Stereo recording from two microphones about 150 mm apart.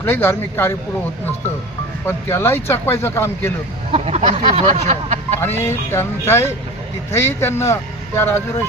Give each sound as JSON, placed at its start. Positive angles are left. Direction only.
{"t": 0.0, "sound": "speech", "side_deg": 15}
{"t": 2.0, "sound": "speech", "side_deg": 15}
{"t": 3.9, "sound": "speech", "side_deg": -45}
{"t": 5.4, "sound": "speech", "side_deg": 15}